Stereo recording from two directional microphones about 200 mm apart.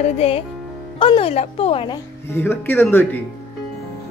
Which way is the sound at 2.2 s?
10° left (ahead or behind).